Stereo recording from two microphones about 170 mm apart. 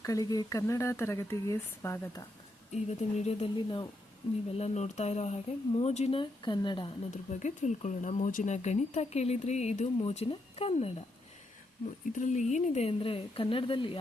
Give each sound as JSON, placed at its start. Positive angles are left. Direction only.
{"t": 0.0, "sound": "speech", "side_deg": 20}
{"t": 2.7, "sound": "speech", "side_deg": 35}
{"t": 7.1, "sound": "speech", "side_deg": 45}
{"t": 12.1, "sound": "speech", "side_deg": 45}